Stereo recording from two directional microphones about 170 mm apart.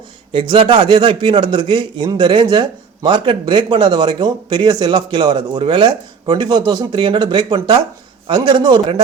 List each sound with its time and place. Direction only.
0.3 s a man's voice: 30° right (ahead or behind)